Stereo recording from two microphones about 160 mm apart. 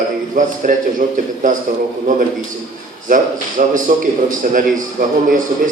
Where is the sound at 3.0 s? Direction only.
55° right (ahead or behind).